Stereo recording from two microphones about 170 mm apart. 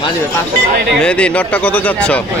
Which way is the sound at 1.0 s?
5° left (ahead or behind).